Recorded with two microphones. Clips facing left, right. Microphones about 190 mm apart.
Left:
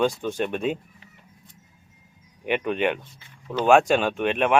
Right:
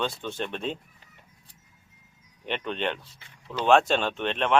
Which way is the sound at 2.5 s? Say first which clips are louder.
Left 6 dB; 10° left (ahead or behind).